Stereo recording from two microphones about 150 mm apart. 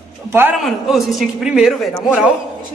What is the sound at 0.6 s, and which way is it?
Speech, centre (ahead or behind).